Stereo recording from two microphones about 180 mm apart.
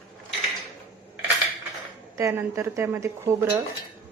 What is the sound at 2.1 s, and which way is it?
A woman's voice, 15° right (ahead or behind).